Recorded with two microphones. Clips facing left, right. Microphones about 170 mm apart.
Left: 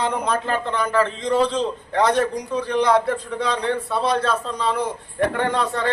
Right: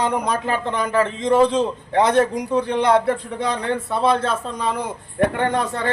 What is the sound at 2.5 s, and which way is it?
Speech, 55° right (ahead or behind).